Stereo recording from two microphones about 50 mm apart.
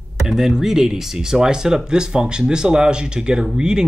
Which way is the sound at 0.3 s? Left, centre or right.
Centre.